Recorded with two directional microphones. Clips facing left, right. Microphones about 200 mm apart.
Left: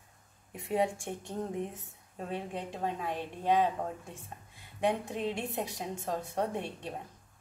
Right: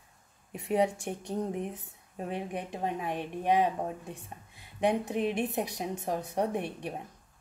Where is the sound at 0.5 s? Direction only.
20° right (ahead or behind).